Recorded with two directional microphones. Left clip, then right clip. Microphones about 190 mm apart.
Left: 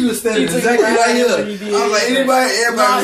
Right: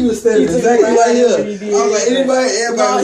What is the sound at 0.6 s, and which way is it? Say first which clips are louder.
A man's voice: right 1 dB; 30° left (ahead or behind).